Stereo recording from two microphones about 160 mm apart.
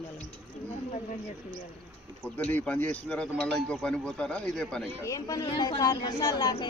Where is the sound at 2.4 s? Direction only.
10° left (ahead or behind).